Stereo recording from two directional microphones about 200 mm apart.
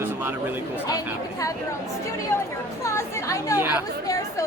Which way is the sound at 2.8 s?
15° left (ahead or behind).